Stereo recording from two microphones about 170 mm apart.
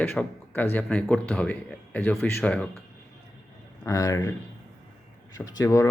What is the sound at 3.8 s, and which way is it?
Speech, 20° left (ahead or behind).